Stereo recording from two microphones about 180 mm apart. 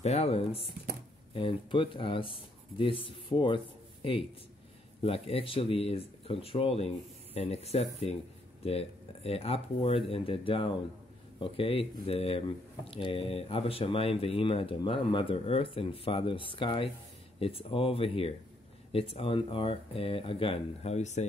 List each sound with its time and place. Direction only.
0.0 s speech: 35° left (ahead or behind)